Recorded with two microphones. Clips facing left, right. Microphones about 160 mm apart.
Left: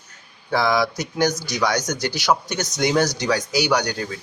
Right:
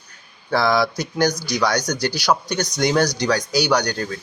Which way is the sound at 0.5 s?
15° left (ahead or behind).